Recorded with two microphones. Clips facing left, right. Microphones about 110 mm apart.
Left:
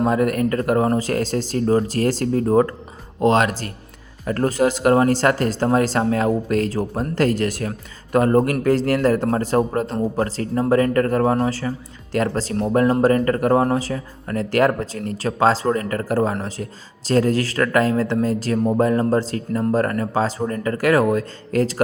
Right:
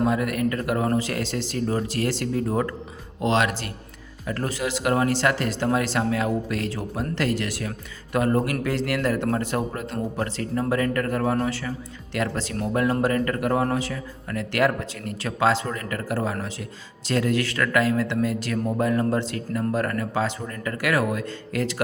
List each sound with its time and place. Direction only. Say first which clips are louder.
0.0 s speech: left 4 dB; 40° left (ahead or behind)